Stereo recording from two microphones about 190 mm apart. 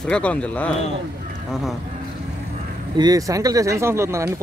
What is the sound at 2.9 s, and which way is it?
Speech, 20° right (ahead or behind).